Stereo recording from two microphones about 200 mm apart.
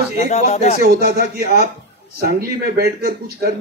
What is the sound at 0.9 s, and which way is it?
A man's voice, 50° right (ahead or behind).